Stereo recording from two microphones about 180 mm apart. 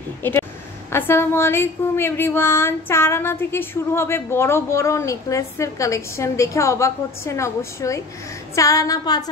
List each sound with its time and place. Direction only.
0.2 s a woman's voice: 15° left (ahead or behind)
8.5 s female singing: 20° left (ahead or behind)